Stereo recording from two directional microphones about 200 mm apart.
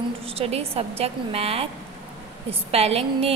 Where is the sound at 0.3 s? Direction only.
30° right (ahead or behind).